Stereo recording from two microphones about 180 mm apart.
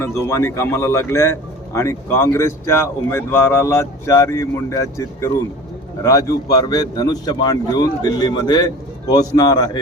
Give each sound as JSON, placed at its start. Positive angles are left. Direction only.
{"t": 0.0, "sound": "a man's voice", "side_deg": 15}